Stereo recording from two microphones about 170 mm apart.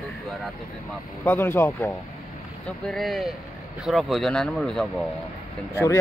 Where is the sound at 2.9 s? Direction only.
Centre (ahead or behind).